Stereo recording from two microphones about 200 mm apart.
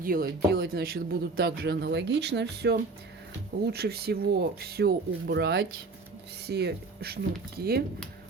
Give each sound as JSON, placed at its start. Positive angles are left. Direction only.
{"t": 0.0, "sound": "speech", "side_deg": -45}